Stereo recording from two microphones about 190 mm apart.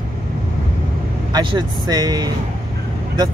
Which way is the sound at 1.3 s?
25° right (ahead or behind).